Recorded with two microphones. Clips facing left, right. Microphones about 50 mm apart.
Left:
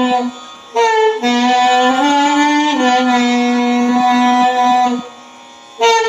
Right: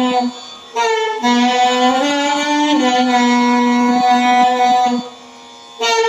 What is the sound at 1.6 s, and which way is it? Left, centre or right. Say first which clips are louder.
Music: left 2 dB; left.